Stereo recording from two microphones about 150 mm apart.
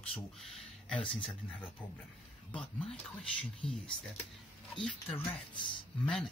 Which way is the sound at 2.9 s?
5° left (ahead or behind).